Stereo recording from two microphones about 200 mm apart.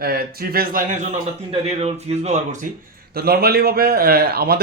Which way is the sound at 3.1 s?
50° right (ahead or behind).